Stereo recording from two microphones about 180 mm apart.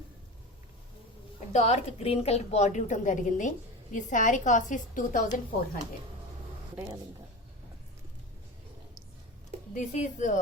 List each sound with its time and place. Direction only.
1.5 s a woman's voice: 35° left (ahead or behind)
9.7 s a woman's voice: 40° left (ahead or behind)